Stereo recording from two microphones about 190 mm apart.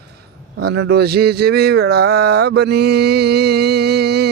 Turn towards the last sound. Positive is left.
turn(degrees=-60)  # may be behind; listen again after turning